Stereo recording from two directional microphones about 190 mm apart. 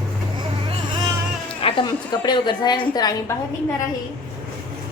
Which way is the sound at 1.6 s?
25° left (ahead or behind).